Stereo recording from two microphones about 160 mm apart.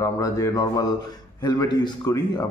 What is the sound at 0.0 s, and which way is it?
A man's voice, 20° left (ahead or behind).